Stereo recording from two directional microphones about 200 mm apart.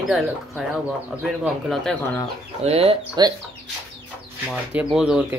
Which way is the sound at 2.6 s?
30° right (ahead or behind).